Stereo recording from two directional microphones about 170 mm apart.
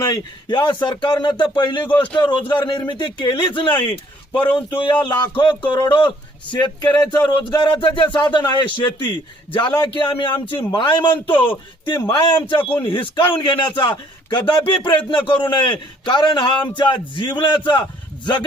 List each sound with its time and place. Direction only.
0.0 s a man's voice: 25° left (ahead or behind)